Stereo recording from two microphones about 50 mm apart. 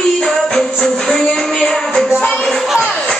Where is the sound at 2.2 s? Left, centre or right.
Left.